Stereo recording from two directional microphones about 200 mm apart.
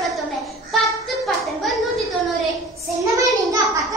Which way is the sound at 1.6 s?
Centre (ahead or behind).